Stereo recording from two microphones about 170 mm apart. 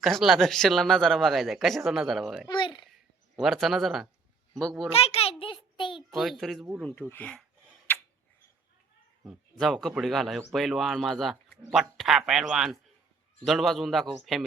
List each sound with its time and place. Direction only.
0.0 s speech: centre (ahead or behind)
2.5 s speech: 30° left (ahead or behind)
3.3 s speech: centre (ahead or behind)
4.9 s a child's voice: 35° left (ahead or behind)
5.4 s a sound: 30° left (ahead or behind)
6.1 s speech: centre (ahead or behind)
9.2 s speech: centre (ahead or behind)